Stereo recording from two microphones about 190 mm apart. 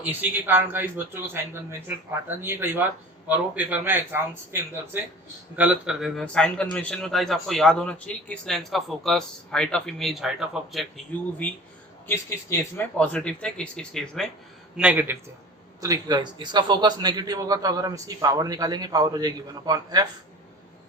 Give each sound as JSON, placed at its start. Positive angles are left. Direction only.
{"t": 0.0, "sound": "a man's voice", "side_deg": -10}
{"t": 12.0, "sound": "a man's voice", "side_deg": 10}
{"t": 14.8, "sound": "a man's voice", "side_deg": -10}